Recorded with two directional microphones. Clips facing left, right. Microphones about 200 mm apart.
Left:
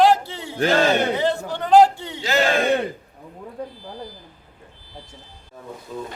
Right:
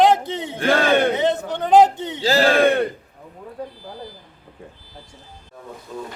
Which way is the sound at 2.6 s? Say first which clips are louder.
Right 4 dB; 55° right (ahead or behind).